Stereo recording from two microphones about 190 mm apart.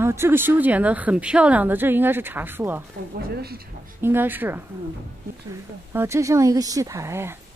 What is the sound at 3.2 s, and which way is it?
Speech, 50° right (ahead or behind).